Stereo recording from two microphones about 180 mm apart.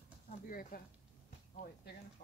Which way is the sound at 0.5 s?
50° left (ahead or behind).